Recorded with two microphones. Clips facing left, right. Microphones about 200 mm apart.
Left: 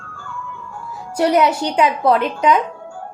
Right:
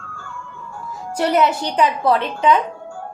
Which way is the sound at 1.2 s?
10° left (ahead or behind).